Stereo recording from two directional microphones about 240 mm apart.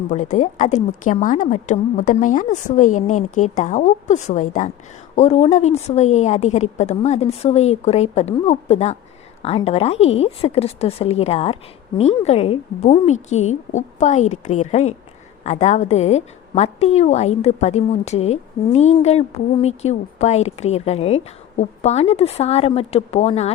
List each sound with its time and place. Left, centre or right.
0.1 s a woman's voice: left